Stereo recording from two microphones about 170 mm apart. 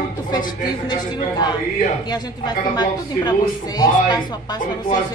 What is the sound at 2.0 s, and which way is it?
A woman's voice, 25° left (ahead or behind).